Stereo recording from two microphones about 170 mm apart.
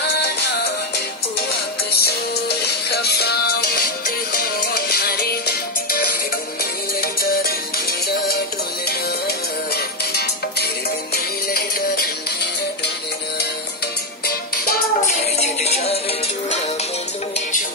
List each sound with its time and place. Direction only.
1.9 s music: 70° left (ahead or behind)
9.8 s music: 70° left (ahead or behind)
14.2 s music: 65° left (ahead or behind)
15.3 s music: 40° left (ahead or behind)